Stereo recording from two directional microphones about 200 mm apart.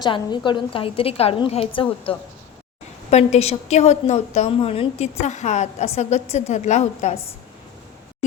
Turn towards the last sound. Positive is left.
turn(degrees=35)  # may be behind; listen again after turning